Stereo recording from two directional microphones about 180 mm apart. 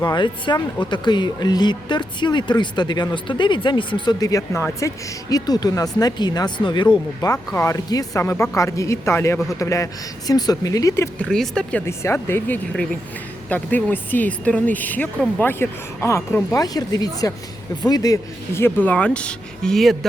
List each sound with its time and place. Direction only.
0.0 s speech: 25° left (ahead or behind)
11.3 s speech: 5° left (ahead or behind)